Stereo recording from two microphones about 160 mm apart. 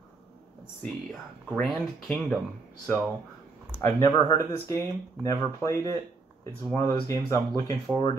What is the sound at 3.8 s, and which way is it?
Speech, 15° left (ahead or behind).